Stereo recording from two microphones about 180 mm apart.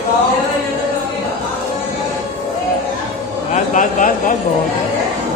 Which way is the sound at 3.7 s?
45° left (ahead or behind).